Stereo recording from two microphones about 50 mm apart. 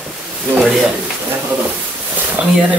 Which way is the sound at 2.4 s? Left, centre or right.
Centre.